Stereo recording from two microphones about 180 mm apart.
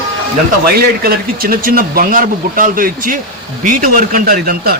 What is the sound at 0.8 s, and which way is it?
A man's voice, 55° right (ahead or behind).